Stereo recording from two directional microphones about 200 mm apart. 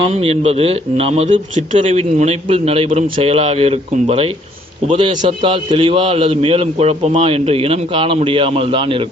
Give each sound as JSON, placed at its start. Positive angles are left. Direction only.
{"t": 0.0, "sound": "a man's voice", "side_deg": -30}